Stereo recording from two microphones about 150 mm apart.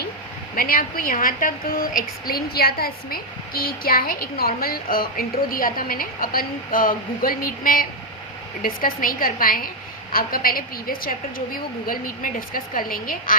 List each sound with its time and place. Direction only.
0.5 s a woman's voice: 75° left (ahead or behind)